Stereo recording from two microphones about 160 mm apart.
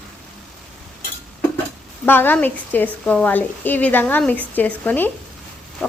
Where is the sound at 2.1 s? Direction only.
10° left (ahead or behind).